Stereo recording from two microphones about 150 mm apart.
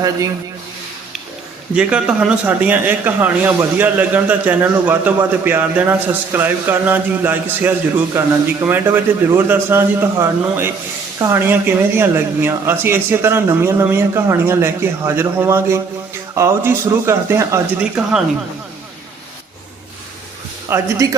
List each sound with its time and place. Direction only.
1.7 s a man's voice: 5° right (ahead or behind)
20.7 s speech: 20° right (ahead or behind)